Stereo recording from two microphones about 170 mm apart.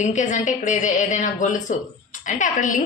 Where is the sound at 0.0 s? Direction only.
45° left (ahead or behind).